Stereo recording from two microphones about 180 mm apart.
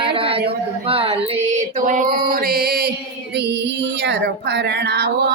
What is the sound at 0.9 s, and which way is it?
Mantra, 30° right (ahead or behind).